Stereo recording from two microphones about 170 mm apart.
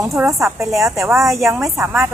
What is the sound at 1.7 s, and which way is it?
Speech, 15° right (ahead or behind).